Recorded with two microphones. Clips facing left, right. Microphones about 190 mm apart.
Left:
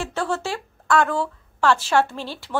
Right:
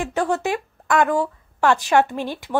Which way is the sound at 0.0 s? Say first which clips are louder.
Right 4 dB; 15° right (ahead or behind).